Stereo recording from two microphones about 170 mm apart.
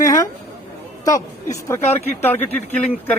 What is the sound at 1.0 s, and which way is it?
A woman's voice, 20° left (ahead or behind).